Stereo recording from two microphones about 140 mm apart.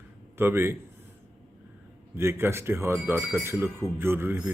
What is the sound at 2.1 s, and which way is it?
Speech, 15° right (ahead or behind).